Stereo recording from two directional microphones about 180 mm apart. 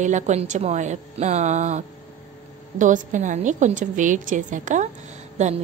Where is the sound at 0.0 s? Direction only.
40° right (ahead or behind).